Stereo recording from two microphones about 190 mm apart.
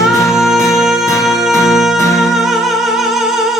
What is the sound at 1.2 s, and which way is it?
Music, centre (ahead or behind).